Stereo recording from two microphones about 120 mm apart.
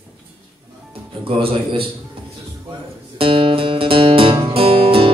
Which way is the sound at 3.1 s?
50° right (ahead or behind).